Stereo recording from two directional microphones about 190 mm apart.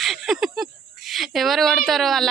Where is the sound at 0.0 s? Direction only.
Centre (ahead or behind).